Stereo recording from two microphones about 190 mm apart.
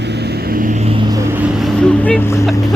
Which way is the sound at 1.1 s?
15° right (ahead or behind).